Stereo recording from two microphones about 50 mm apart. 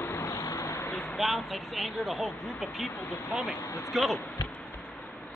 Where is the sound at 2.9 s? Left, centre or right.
Left.